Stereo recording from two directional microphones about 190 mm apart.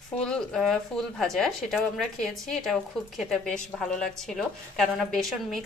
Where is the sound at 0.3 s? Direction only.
Centre (ahead or behind).